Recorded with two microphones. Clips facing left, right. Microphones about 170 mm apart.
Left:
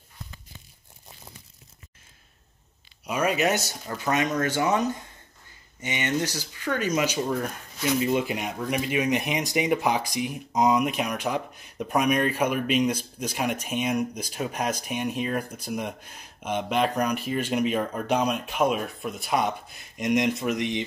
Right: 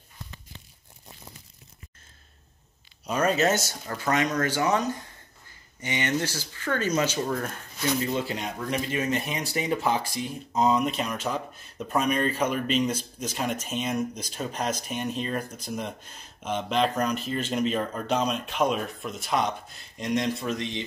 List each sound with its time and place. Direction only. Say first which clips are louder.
3.1 s speech: right 1 dB; 10° left (ahead or behind)